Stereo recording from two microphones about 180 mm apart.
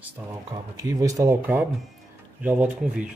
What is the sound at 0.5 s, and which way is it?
Speech, 20° right (ahead or behind).